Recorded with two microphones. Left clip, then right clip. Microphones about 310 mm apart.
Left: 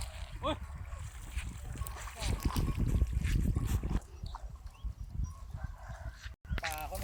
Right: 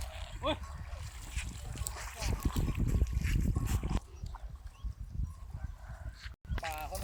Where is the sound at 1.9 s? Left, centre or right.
Centre.